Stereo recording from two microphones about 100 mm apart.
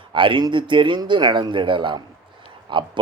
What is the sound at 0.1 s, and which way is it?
Speech, 55° right (ahead or behind).